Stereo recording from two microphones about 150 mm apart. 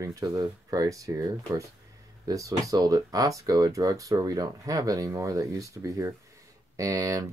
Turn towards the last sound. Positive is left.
turn(degrees=-20)  # may be behind; listen again after turning